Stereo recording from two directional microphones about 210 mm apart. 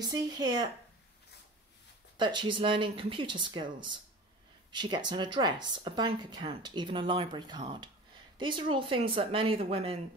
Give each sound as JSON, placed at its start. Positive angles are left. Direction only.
{"t": 0.0, "sound": "speech", "side_deg": -20}
{"t": 2.1, "sound": "speech", "side_deg": -20}